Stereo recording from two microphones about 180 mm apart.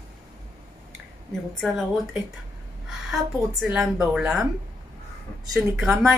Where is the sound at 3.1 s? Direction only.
Centre (ahead or behind).